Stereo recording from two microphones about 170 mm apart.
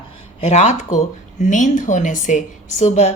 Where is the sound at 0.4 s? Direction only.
40° left (ahead or behind).